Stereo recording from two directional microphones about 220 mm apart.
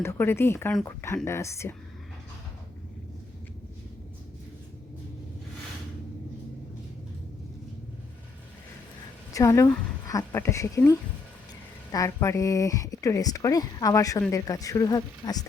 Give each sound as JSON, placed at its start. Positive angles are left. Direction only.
{"t": 0.0, "sound": "speech", "side_deg": 10}
{"t": 9.3, "sound": "speech", "side_deg": 15}